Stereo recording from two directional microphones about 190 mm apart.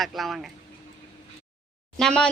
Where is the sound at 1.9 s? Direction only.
5° left (ahead or behind).